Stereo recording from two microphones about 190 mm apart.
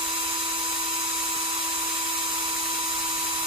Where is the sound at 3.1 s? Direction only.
30° right (ahead or behind).